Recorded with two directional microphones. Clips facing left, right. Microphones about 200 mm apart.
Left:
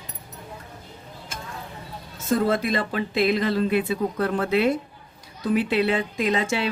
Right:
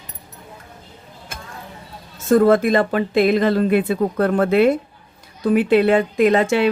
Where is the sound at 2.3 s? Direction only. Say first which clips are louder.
Right 8 dB; 50° right (ahead or behind).